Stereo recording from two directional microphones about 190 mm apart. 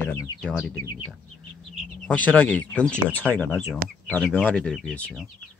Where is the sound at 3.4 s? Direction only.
Centre (ahead or behind).